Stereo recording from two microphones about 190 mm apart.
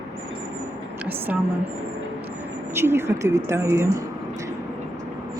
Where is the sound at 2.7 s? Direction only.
15° right (ahead or behind).